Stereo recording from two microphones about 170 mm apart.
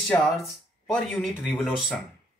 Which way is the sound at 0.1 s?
15° left (ahead or behind).